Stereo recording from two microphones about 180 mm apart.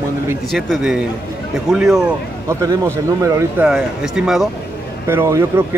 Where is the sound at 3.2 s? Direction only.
15° right (ahead or behind).